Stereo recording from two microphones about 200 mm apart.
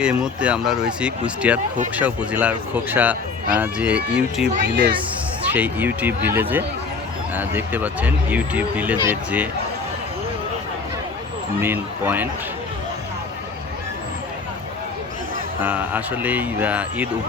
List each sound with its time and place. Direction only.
0.0 s speech: 5° right (ahead or behind)
4.6 s speech: 60° right (ahead or behind)
5.5 s speech: 10° right (ahead or behind)
11.6 s speech: 10° right (ahead or behind)
15.6 s speech: 10° right (ahead or behind)